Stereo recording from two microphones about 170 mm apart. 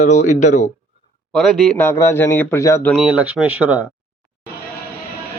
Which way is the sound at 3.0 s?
5° right (ahead or behind).